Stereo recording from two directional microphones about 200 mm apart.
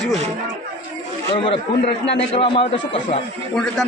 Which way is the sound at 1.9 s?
60° left (ahead or behind).